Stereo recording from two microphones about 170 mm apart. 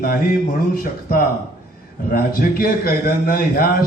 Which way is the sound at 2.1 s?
60° left (ahead or behind).